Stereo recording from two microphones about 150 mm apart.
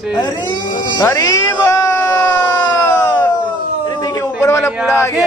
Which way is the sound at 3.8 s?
30° left (ahead or behind).